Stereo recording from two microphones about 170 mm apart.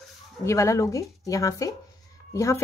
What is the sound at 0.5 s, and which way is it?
Speech, 20° left (ahead or behind).